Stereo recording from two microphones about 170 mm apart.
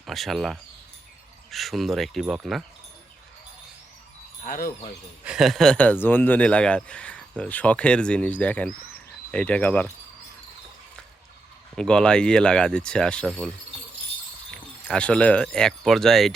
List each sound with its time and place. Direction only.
0.0 s speech: centre (ahead or behind)
4.4 s speech: 55° left (ahead or behind)
5.2 s speech: 5° right (ahead or behind)
11.8 s speech: 5° left (ahead or behind)
14.5 s speech: 5° left (ahead or behind)